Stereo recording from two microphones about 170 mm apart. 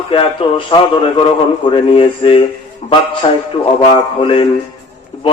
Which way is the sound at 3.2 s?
25° left (ahead or behind).